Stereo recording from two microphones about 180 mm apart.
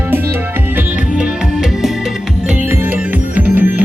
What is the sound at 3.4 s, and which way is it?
Music, 10° right (ahead or behind).